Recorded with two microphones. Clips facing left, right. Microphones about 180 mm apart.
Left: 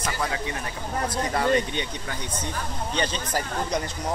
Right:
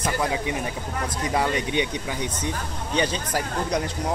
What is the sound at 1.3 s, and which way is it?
Speech, 10° right (ahead or behind).